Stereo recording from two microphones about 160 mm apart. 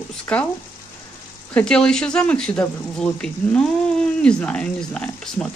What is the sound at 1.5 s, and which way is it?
Speech, 5° left (ahead or behind).